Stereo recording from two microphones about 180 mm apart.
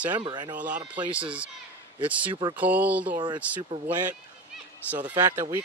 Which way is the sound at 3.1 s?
25° right (ahead or behind).